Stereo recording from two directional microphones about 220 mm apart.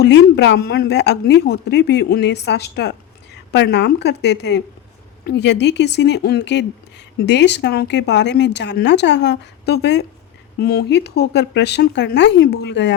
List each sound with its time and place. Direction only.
0.0 s speech: 50° left (ahead or behind)